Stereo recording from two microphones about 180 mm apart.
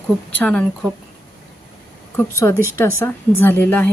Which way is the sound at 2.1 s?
15° left (ahead or behind).